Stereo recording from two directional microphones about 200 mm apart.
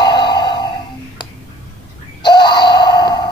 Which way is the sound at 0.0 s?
20° left (ahead or behind).